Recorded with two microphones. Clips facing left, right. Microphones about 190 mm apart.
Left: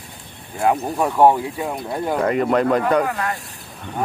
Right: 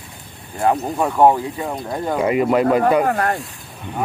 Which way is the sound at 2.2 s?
5° right (ahead or behind).